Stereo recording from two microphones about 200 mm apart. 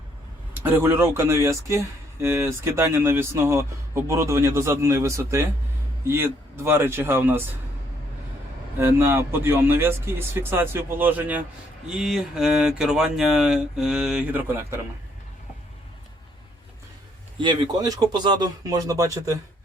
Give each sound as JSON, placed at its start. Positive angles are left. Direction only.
{"t": 0.6, "sound": "speech", "side_deg": -10}
{"t": 8.8, "sound": "speech", "side_deg": -10}
{"t": 17.4, "sound": "speech", "side_deg": -25}